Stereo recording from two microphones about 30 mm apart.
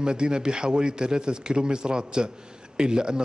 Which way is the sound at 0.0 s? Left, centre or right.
Right.